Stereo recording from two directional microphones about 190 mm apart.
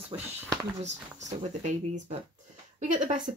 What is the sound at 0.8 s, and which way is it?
A woman's voice, 40° right (ahead or behind).